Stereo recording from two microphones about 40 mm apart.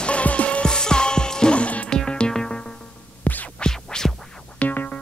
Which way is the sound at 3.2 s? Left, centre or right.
Left.